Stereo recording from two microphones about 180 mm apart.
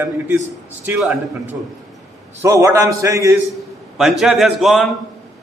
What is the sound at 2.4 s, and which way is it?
Speech, 15° right (ahead or behind).